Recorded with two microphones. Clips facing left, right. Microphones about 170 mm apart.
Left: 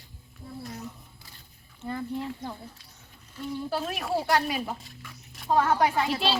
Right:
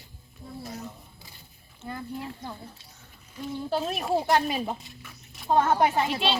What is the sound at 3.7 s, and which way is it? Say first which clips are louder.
Speech: right 4 dB; 25° right (ahead or behind).